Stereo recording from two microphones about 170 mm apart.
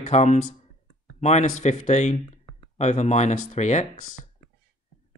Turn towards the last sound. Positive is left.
turn(degrees=45)  # may be behind; listen again after turning